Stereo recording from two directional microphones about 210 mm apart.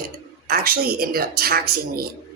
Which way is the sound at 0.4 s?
45° right (ahead or behind).